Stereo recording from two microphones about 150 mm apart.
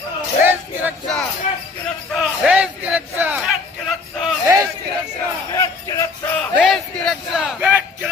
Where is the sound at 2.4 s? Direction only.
10° right (ahead or behind).